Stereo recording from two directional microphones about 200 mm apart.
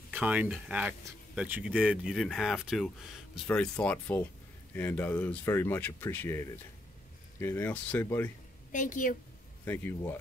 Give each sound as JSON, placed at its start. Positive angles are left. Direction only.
{"t": 0.1, "sound": "speech", "side_deg": -5}
{"t": 8.7, "sound": "a woman's voice", "side_deg": 40}
{"t": 9.7, "sound": "speech", "side_deg": 10}